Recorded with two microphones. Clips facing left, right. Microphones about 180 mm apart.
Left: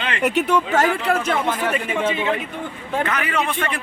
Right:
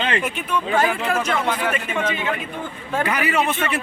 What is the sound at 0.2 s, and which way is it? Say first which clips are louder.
Speech: left 6 dB; 75° left (ahead or behind).